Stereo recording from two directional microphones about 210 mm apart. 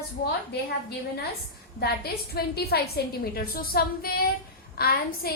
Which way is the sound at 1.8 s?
50° left (ahead or behind).